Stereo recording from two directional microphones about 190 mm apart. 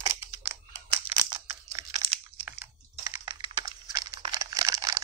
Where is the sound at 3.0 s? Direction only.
20° right (ahead or behind).